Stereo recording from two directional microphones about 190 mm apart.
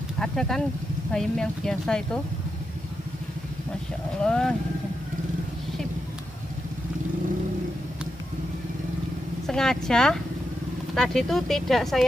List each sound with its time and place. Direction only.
0.2 s speech: centre (ahead or behind)
4.2 s speech: 5° left (ahead or behind)
9.5 s speech: 5° left (ahead or behind)